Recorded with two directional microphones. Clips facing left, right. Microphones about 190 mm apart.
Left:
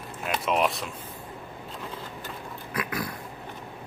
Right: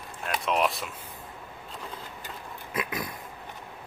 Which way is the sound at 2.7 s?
20° right (ahead or behind).